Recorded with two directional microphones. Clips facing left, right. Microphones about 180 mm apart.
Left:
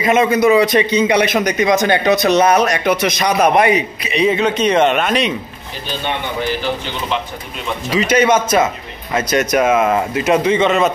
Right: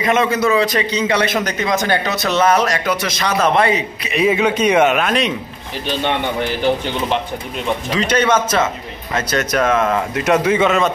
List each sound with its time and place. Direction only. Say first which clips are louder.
0.0 s a man's voice: left 3 dB; 10° left (ahead or behind)
4.1 s speech: even; 5° right (ahead or behind)
7.9 s a man's voice: left 3 dB; 10° left (ahead or behind)